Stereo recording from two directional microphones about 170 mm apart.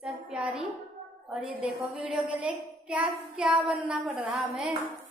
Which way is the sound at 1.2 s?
5° right (ahead or behind).